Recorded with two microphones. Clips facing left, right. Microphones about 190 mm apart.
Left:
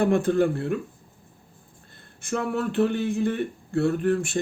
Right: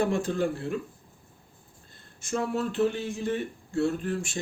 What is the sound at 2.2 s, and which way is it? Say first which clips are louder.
Speech: left 2 dB; 60° left (ahead or behind).